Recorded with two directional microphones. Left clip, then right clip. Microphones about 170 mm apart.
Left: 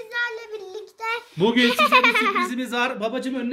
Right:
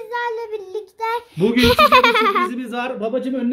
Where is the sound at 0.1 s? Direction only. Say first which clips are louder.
Right 4 dB; 20° right (ahead or behind).